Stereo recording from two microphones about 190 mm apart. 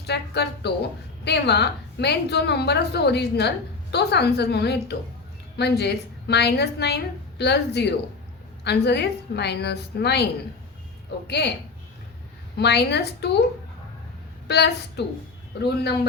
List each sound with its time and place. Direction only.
0.0 s a woman's voice: 60° left (ahead or behind)
11.3 s a woman's voice: 60° left (ahead or behind)
12.5 s a woman's voice: 60° left (ahead or behind)
14.4 s a woman's voice: 60° left (ahead or behind)